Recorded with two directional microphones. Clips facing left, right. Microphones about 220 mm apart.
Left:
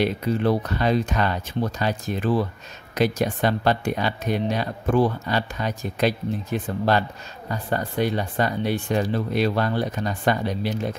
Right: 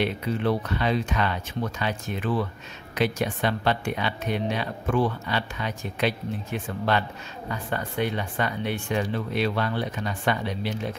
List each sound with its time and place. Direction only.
0.0 s speech: 40° left (ahead or behind)